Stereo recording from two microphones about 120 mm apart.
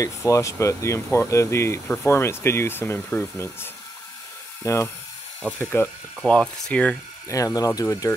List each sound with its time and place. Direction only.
0.0 s speech: 25° left (ahead or behind)
4.6 s speech: 25° left (ahead or behind)
6.2 s speech: 10° left (ahead or behind)
7.2 s speech: 25° left (ahead or behind)